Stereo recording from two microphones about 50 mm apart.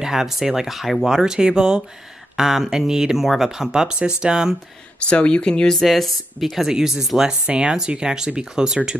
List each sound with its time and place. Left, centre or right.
0.0 s speech: centre
5.0 s speech: left
5.9 s speech: centre